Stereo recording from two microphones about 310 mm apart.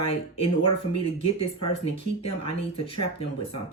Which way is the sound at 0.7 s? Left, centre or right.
Centre.